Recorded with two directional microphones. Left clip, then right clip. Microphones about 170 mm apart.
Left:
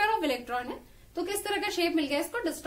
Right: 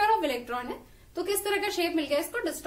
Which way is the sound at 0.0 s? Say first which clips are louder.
Right 2 dB; 20° left (ahead or behind).